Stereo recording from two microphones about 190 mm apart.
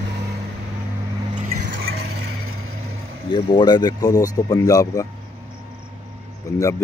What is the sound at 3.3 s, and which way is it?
Speech, 25° left (ahead or behind).